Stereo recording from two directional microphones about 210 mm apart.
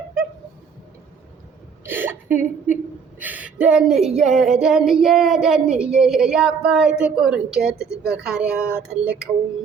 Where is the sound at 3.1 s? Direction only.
5° right (ahead or behind).